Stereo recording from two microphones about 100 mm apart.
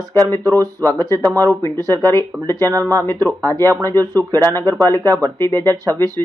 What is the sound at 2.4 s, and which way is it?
Speech, 25° left (ahead or behind).